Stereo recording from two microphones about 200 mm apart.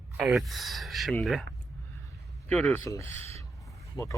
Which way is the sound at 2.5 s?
5° left (ahead or behind).